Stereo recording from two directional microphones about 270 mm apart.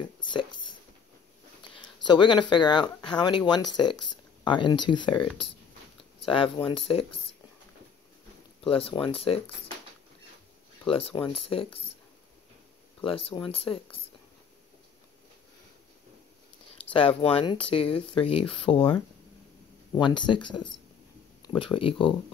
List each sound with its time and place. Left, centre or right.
0.0 s speech: centre
1.8 s speech: centre
3.9 s speech: left
4.5 s speech: centre
8.6 s speech: centre
10.9 s speech: left
13.3 s speech: centre
16.9 s speech: centre
20.0 s speech: centre